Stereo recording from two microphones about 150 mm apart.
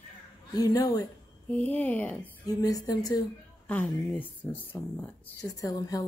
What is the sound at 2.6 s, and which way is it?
Speech, 25° left (ahead or behind).